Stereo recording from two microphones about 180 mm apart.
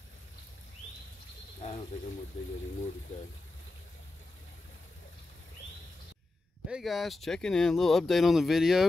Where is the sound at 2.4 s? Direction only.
35° left (ahead or behind).